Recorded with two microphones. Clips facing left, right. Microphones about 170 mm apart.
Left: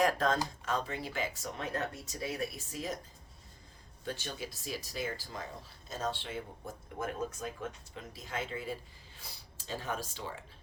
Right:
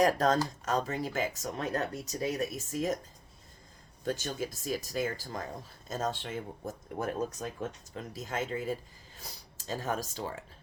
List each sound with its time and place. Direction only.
0.0 s speech: 40° right (ahead or behind)
4.0 s speech: 45° right (ahead or behind)